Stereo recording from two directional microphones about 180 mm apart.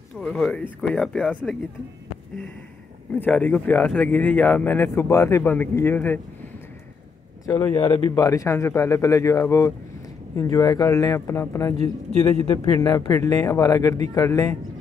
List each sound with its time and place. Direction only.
0.2 s speech: 5° left (ahead or behind)
3.2 s speech: 10° left (ahead or behind)
7.4 s speech: 15° left (ahead or behind)